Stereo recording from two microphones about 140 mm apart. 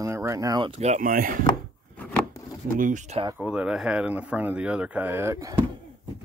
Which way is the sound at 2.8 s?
65° right (ahead or behind).